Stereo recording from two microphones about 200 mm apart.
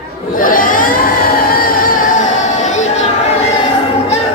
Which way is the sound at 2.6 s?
35° left (ahead or behind).